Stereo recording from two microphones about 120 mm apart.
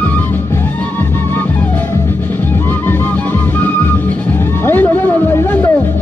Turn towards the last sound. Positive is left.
turn(degrees=15)  # may be behind; listen again after turning